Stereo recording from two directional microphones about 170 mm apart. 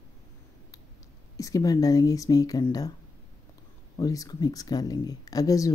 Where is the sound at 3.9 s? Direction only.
20° left (ahead or behind).